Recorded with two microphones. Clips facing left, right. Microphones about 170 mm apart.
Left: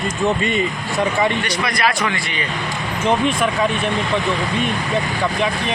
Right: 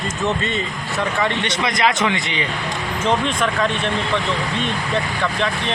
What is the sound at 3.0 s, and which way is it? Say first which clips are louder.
Speech: left 2 dB; 10° left (ahead or behind).